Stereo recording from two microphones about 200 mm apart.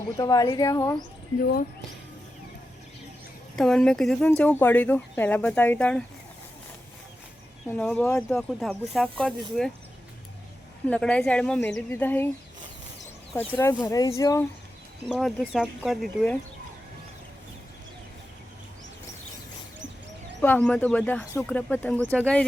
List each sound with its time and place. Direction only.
0.2 s speech: 20° left (ahead or behind)
3.5 s speech: 5° left (ahead or behind)
7.7 s speech: 5° left (ahead or behind)
10.8 s speech: 5° left (ahead or behind)
13.6 s speech: 15° left (ahead or behind)
15.1 s speech: centre (ahead or behind)
20.4 s speech: 5° left (ahead or behind)